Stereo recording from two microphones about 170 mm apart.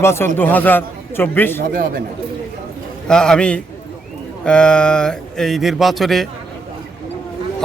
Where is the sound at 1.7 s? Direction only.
55° right (ahead or behind).